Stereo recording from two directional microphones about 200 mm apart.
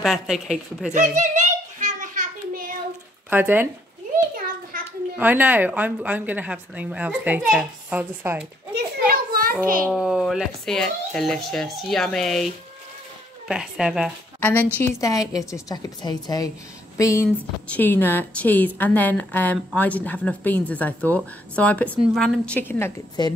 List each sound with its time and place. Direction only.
0.0 s speech: centre (ahead or behind)
0.9 s a sound: 35° right (ahead or behind)
3.3 s speech: 10° right (ahead or behind)
4.7 s a sound: 45° right (ahead or behind)
5.1 s a woman's voice: 10° right (ahead or behind)
8.7 s children playing: 50° right (ahead or behind)
9.8 s speech: 5° right (ahead or behind)
13.5 s speech: 5° right (ahead or behind)
14.4 s a woman's voice: 10° left (ahead or behind)